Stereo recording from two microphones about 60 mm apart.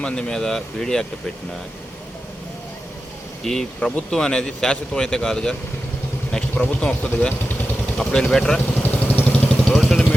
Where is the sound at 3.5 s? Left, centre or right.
Centre.